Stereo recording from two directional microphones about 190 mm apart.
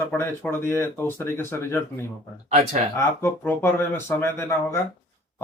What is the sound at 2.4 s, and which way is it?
Speech, 35° right (ahead or behind).